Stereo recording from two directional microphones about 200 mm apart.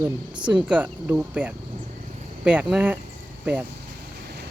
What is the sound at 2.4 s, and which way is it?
Speech, 5° right (ahead or behind).